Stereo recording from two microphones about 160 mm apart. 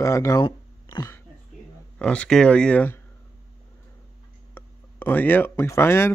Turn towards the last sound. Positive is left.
turn(degrees=15)  # may be behind; listen again after turning